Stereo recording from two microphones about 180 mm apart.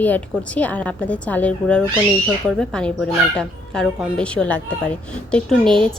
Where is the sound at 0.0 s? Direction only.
10° left (ahead or behind).